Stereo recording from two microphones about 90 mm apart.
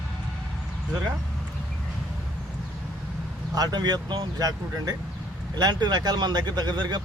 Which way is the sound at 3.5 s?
50° right (ahead or behind).